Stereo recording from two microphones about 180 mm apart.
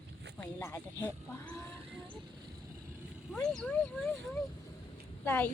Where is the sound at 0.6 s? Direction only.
10° left (ahead or behind).